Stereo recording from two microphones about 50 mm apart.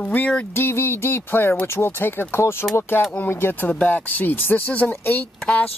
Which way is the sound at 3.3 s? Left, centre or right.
Left.